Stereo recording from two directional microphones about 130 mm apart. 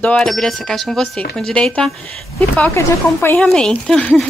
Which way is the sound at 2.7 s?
20° left (ahead or behind).